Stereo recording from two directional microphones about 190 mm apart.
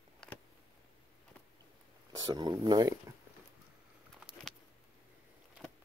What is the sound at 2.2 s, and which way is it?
Speech, 20° right (ahead or behind).